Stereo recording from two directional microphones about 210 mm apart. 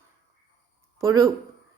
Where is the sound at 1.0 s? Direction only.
15° right (ahead or behind).